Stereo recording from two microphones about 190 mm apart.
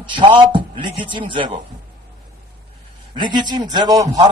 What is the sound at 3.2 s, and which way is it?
A man's voice, 25° right (ahead or behind).